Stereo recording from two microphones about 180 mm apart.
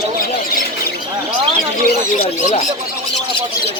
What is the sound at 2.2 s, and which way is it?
Speech, 35° left (ahead or behind).